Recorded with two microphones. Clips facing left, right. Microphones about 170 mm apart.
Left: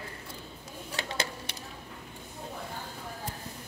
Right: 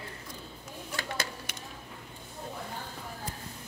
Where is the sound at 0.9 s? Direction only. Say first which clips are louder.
Left 2 dB; 25° left (ahead or behind).